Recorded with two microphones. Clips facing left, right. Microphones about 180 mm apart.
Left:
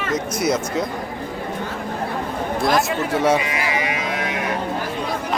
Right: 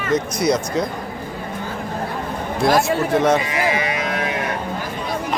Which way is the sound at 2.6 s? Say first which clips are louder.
Right 4 dB; 5° left (ahead or behind).